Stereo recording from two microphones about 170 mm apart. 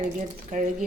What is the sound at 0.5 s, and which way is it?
Speech, 45° right (ahead or behind).